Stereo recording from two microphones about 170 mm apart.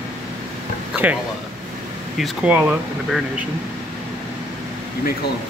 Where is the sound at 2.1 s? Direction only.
5° right (ahead or behind).